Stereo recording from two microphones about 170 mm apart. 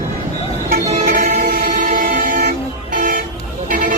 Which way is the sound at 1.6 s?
50° right (ahead or behind).